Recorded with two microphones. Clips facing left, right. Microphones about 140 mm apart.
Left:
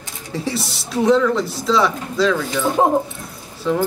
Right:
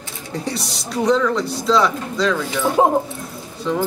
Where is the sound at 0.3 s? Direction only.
Centre (ahead or behind).